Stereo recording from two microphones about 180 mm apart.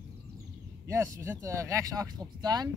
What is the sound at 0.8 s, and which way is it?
Speech, 15° right (ahead or behind).